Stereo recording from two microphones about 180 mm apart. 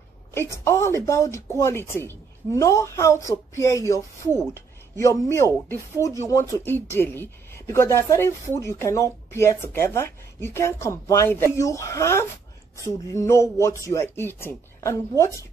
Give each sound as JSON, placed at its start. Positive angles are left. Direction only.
{"t": 0.3, "sound": "speech", "side_deg": 15}